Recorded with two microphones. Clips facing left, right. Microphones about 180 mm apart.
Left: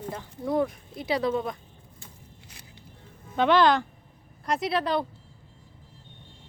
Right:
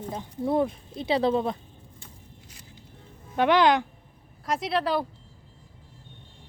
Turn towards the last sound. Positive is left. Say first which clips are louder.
# even
turn(degrees=-5)  # may be behind; listen again after turning